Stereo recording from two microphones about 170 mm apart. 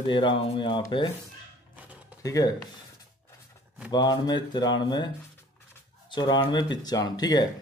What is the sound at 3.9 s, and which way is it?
Mantra, 25° left (ahead or behind).